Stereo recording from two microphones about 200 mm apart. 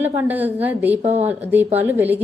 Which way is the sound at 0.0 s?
10° right (ahead or behind).